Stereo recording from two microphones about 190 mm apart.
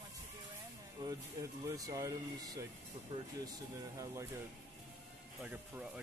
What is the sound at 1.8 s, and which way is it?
Speech, 20° right (ahead or behind).